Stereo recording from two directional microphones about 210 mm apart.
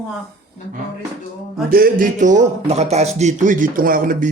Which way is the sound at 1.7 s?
45° right (ahead or behind).